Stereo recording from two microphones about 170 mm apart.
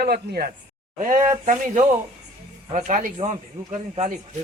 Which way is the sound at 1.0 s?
50° right (ahead or behind).